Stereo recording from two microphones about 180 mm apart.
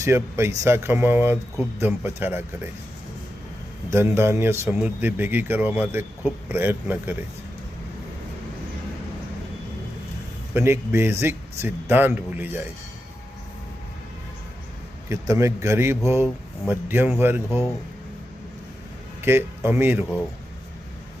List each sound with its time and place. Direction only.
0.0 s a man's voice: 15° right (ahead or behind)
3.8 s a man's voice: 15° right (ahead or behind)
10.5 s a man's voice: 15° right (ahead or behind)
15.1 s a man's voice: 15° right (ahead or behind)
19.2 s a man's voice: 15° right (ahead or behind)